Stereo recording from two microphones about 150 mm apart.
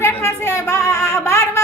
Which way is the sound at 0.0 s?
15° left (ahead or behind).